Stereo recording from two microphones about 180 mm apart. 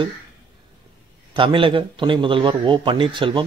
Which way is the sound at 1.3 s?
30° right (ahead or behind).